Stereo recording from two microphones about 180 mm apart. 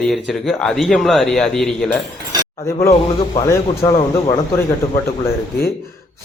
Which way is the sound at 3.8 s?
15° left (ahead or behind).